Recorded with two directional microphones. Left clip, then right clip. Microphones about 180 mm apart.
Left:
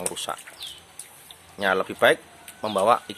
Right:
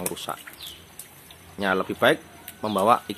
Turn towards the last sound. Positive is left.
turn(degrees=10)  # may be behind; listen again after turning